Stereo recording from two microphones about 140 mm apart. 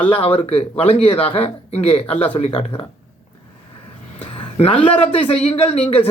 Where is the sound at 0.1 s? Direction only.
40° left (ahead or behind).